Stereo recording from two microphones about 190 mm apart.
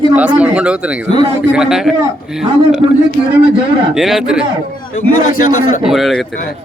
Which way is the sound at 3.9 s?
Centre (ahead or behind).